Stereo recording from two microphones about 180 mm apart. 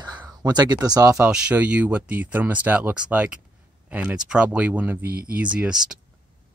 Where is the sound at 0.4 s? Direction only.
25° right (ahead or behind).